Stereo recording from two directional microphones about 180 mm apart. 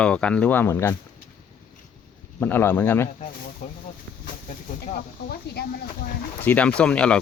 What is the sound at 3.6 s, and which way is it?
Speech, 45° left (ahead or behind).